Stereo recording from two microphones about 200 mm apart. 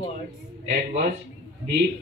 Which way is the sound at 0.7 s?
40° right (ahead or behind).